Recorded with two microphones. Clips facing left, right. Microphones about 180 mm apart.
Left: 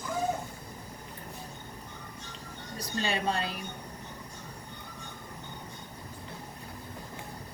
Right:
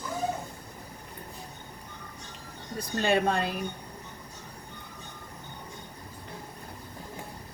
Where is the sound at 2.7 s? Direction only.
55° right (ahead or behind).